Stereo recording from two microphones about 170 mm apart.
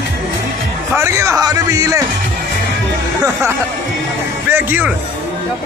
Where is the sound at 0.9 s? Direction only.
15° right (ahead or behind).